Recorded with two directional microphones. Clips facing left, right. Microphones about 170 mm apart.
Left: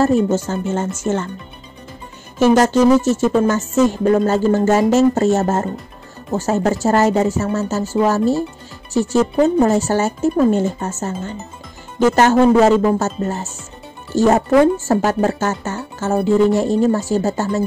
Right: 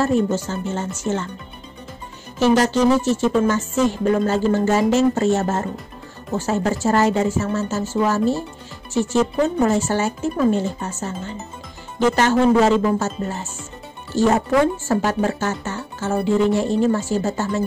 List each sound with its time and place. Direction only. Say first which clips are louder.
0.3 s speech: left 4 dB; 45° left (ahead or behind)
2.3 s speech: left 4 dB; 45° left (ahead or behind)